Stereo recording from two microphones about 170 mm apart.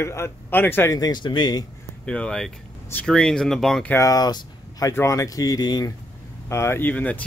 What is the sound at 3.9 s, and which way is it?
Speech, 20° left (ahead or behind).